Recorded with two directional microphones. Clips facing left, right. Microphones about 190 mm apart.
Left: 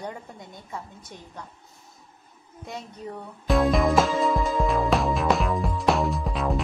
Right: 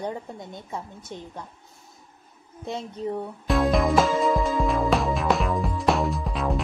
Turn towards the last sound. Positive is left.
turn(degrees=0)  # may be behind; listen again after turning